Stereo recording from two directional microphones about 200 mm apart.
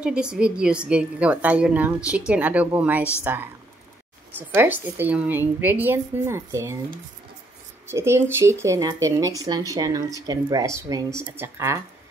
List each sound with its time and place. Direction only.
0.0 s a woman's voice: 5° right (ahead or behind)
3.0 s speech: 10° left (ahead or behind)
4.4 s a woman's voice: 10° right (ahead or behind)
7.9 s a woman's voice: 10° right (ahead or behind)